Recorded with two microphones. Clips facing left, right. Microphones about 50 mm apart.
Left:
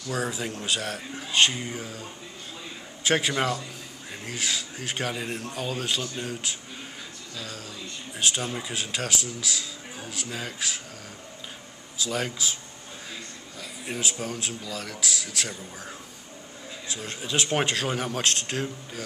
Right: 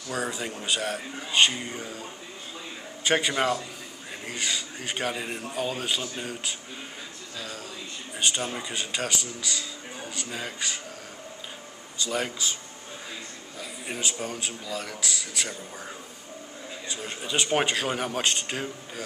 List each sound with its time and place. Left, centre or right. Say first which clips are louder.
0.1 s speech: left 1 dB; centre
12.0 s speech: even; centre
13.6 s speech: left 1 dB; centre